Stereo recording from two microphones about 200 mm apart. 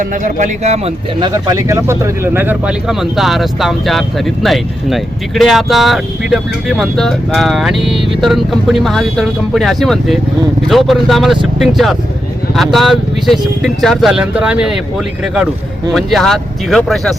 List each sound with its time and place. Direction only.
0.0 s speech: 40° right (ahead or behind)
1.2 s speech: 15° right (ahead or behind); by 17.2 s centre (ahead or behind)